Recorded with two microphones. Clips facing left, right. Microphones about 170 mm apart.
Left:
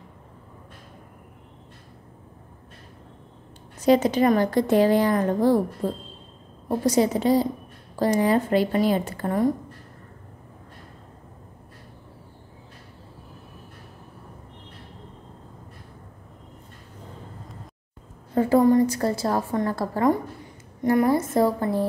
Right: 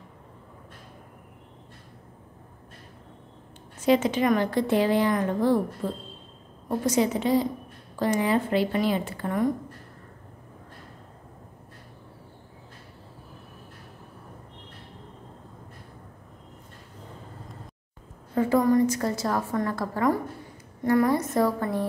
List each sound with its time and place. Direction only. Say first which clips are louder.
3.8 s a woman's voice: left 3 dB; 40° left (ahead or behind)
18.3 s a woman's voice: left 3 dB; 35° left (ahead or behind)